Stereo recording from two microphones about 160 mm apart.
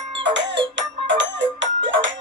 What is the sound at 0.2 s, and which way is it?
Music, 90° right.